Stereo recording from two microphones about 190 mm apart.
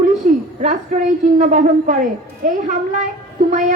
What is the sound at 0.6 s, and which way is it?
A woman's voice, 40° right (ahead or behind).